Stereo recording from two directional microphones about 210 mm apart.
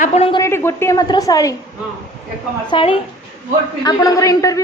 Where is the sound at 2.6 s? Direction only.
25° left (ahead or behind).